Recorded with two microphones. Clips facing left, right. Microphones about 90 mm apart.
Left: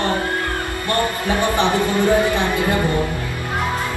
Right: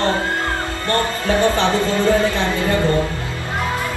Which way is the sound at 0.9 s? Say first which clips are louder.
Right 1 dB; 15° left (ahead or behind).